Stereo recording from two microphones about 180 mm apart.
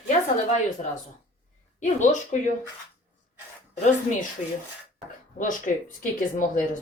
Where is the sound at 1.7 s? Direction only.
45° left (ahead or behind).